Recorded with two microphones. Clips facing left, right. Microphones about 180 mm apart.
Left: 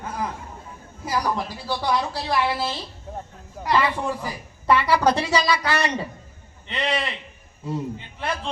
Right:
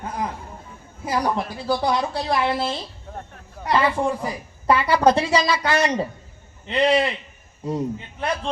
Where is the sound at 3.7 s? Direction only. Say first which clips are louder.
Right 3 dB; 30° right (ahead or behind).